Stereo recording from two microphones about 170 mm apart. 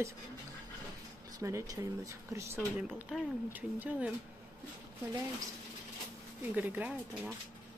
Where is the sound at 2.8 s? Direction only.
10° right (ahead or behind).